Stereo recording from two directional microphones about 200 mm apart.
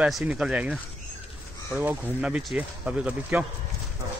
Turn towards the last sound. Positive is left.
turn(degrees=-5)  # may be behind; listen again after turning